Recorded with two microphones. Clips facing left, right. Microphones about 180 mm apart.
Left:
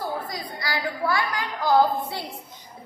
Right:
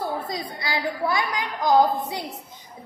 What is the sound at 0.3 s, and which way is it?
A woman's voice, 20° right (ahead or behind).